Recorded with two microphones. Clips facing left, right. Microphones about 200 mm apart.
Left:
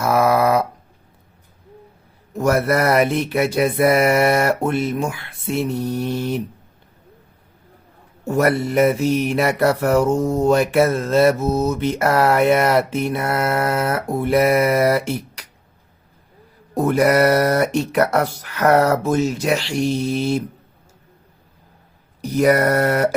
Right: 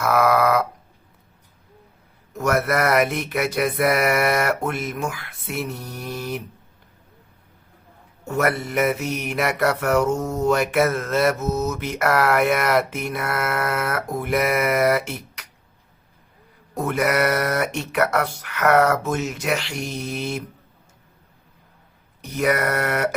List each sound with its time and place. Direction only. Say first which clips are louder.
0.0 s dog: left 2 dB; 30° left (ahead or behind)
2.3 s a sound: left 4 dB; 30° left (ahead or behind)
8.3 s mantra: left 5 dB; 35° left (ahead or behind)
16.7 s mantra: left 6 dB; 35° left (ahead or behind)
22.2 s mantra: left 6 dB; 35° left (ahead or behind)